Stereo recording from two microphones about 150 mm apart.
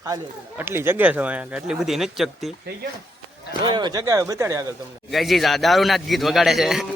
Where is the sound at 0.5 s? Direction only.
15° right (ahead or behind).